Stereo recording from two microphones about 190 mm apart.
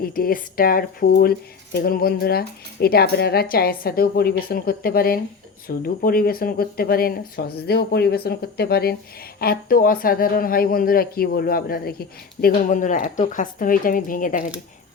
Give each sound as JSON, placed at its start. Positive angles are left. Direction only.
{"t": 0.0, "sound": "a woman's voice", "side_deg": 50}